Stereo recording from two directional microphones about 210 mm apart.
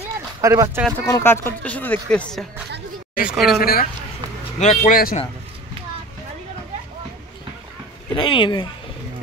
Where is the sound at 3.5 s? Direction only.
45° left (ahead or behind).